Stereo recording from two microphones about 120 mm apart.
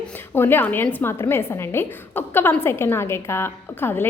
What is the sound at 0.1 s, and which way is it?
A woman's voice, 15° left (ahead or behind).